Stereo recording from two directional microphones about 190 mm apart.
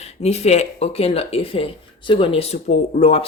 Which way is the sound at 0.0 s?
35° left (ahead or behind).